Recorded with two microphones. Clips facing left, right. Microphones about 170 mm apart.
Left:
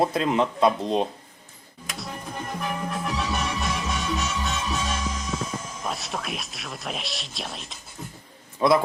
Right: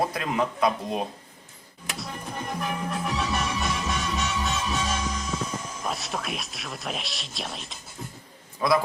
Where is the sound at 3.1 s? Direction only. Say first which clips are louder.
Even; centre (ahead or behind).